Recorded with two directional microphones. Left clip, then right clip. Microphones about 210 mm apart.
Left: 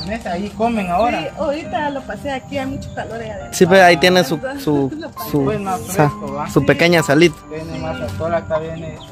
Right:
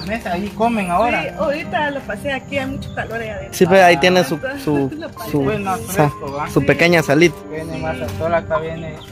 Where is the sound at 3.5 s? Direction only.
5° left (ahead or behind).